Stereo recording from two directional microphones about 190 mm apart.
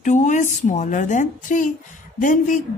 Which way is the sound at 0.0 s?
40° left (ahead or behind).